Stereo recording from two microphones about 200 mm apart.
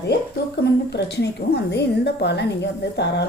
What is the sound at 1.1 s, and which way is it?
A woman's voice, 55° left (ahead or behind).